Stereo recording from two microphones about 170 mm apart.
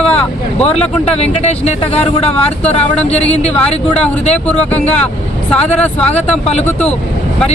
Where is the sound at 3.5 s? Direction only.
5° left (ahead or behind).